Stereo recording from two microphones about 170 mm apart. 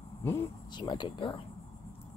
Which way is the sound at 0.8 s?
25° left (ahead or behind).